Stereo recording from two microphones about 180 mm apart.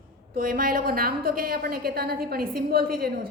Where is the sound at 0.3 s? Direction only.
50° right (ahead or behind).